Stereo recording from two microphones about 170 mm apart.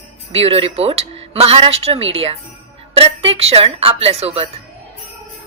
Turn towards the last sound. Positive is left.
turn(degrees=-35)  # may be behind; listen again after turning